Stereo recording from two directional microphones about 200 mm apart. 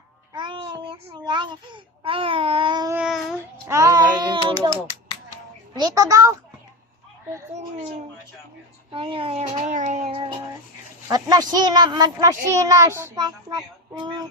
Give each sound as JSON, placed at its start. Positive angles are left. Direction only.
{"t": 0.3, "sound": "a child's voice", "side_deg": -25}
{"t": 2.9, "sound": "child singing", "side_deg": -5}
{"t": 3.7, "sound": "a child's voice", "side_deg": -15}
{"t": 5.7, "sound": "a child's voice", "side_deg": -20}
{"t": 8.9, "sound": "a child's voice", "side_deg": -25}